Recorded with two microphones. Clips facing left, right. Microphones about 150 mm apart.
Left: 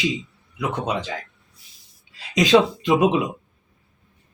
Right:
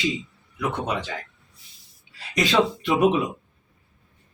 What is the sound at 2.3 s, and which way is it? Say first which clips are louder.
Speech: left 5 dB; 15° left (ahead or behind).